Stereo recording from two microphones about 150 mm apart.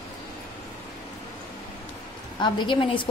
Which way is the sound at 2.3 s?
30° left (ahead or behind).